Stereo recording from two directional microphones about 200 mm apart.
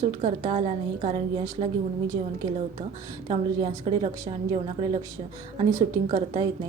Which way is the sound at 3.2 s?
25° right (ahead or behind).